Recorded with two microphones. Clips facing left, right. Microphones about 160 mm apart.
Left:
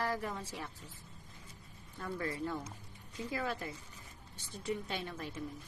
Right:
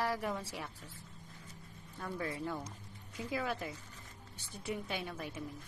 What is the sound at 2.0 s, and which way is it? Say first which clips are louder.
A woman's voice: left 1 dB; 10° right (ahead or behind).